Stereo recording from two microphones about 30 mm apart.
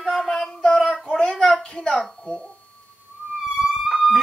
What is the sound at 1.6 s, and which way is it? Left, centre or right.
Speech, left.